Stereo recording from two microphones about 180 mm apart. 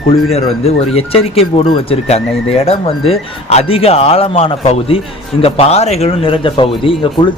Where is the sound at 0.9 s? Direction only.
35° left (ahead or behind).